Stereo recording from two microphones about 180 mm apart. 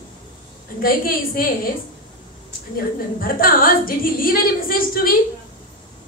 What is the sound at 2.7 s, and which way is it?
A woman's voice, 55° left (ahead or behind).